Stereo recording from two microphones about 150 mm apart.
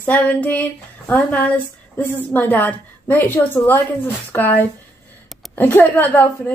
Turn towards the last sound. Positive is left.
turn(degrees=10)  # may be behind; listen again after turning